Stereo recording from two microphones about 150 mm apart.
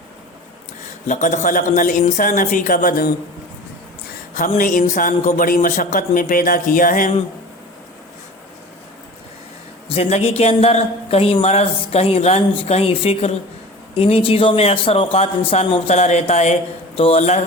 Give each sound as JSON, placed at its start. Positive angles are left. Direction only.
{"t": 1.0, "sound": "speech", "side_deg": 55}
{"t": 4.4, "sound": "speech", "side_deg": 65}
{"t": 9.9, "sound": "a man's voice", "side_deg": 45}